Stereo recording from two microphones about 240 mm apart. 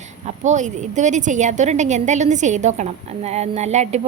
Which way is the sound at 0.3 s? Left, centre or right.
Right.